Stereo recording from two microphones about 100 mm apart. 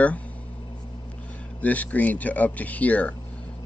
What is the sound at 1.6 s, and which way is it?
Speech, 15° left (ahead or behind).